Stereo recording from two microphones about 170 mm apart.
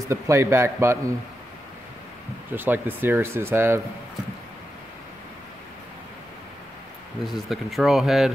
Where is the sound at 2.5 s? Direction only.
10° right (ahead or behind).